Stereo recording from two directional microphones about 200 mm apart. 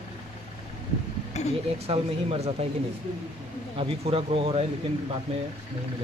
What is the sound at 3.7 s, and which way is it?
Speech, 25° right (ahead or behind).